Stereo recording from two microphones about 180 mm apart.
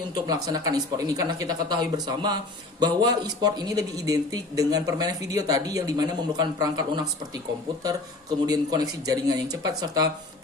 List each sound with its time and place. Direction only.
0.4 s speech: 20° right (ahead or behind)
8.4 s speech: 20° right (ahead or behind)